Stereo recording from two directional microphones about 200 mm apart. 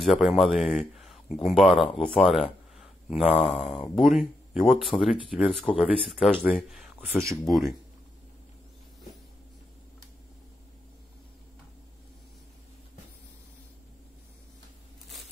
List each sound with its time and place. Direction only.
0.0 s speech: centre (ahead or behind)
3.2 s speech: 35° left (ahead or behind)
3.4 s speech: centre (ahead or behind)